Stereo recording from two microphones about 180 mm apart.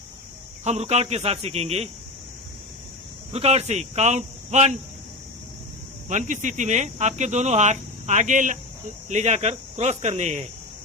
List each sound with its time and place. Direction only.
0.6 s speech: 40° right (ahead or behind)
3.3 s speech: 35° right (ahead or behind)
6.1 s speech: 45° right (ahead or behind)